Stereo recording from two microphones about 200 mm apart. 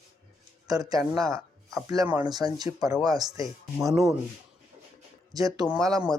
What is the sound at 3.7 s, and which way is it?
Speech, centre (ahead or behind).